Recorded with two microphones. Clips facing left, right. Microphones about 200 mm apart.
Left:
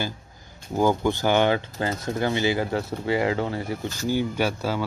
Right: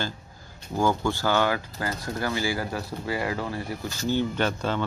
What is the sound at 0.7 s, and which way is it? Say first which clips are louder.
Speech: left 3 dB; 20° left (ahead or behind).